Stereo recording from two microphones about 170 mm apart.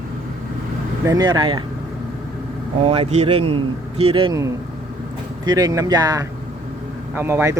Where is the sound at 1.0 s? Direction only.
20° right (ahead or behind).